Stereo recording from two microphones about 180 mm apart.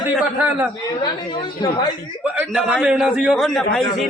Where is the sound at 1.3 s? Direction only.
25° left (ahead or behind).